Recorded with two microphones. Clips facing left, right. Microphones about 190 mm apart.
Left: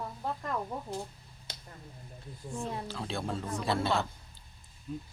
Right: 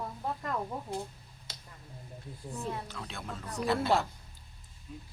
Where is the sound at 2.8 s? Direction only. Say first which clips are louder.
Left 6 dB; 30° left (ahead or behind).